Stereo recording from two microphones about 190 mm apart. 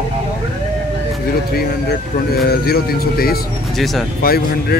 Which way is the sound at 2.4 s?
55° left (ahead or behind).